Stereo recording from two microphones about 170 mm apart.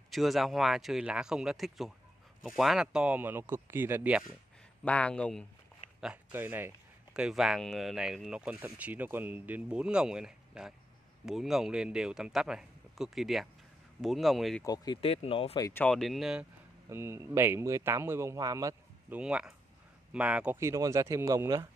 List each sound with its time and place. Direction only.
0.1 s a man's voice: centre (ahead or behind)
4.8 s speech: 5° left (ahead or behind)
5.9 s speech: 5° right (ahead or behind)
14.6 s speech: 20° left (ahead or behind)
15.0 s speech: 35° left (ahead or behind)
15.6 s speech: 10° left (ahead or behind)
16.9 s a man's voice: 15° right (ahead or behind)
19.1 s a man's voice: 5° right (ahead or behind)